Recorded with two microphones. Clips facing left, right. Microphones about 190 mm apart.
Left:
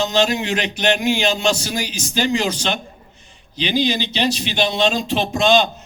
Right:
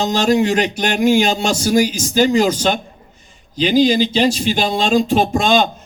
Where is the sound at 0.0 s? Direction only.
45° right (ahead or behind).